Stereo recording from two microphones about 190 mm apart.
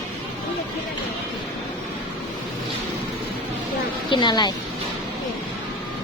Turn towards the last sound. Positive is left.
turn(degrees=20)  # may be behind; listen again after turning